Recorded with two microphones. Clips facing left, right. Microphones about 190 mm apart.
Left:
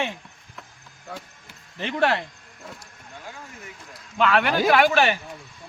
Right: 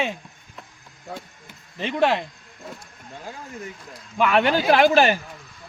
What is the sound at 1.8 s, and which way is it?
Speech, 15° right (ahead or behind).